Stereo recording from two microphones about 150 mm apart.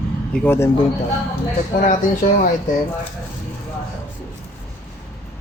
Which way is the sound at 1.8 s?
65° left (ahead or behind).